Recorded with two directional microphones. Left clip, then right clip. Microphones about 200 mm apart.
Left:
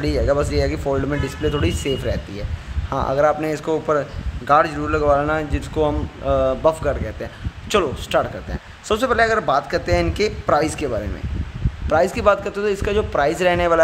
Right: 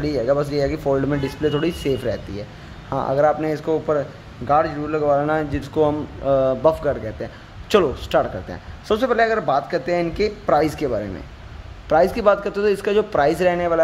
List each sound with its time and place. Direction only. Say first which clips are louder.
0.0 s a man's voice: even; centre (ahead or behind)